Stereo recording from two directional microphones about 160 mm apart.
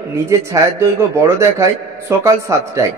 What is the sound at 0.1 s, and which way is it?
A man's voice, 20° right (ahead or behind).